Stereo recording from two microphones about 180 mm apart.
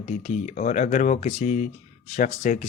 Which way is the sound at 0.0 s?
40° left (ahead or behind).